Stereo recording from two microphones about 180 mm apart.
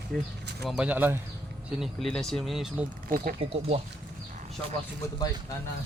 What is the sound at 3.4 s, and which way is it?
Speech, 30° right (ahead or behind).